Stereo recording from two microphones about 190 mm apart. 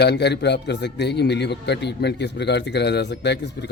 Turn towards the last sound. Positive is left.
turn(degrees=60)  # may be behind; listen again after turning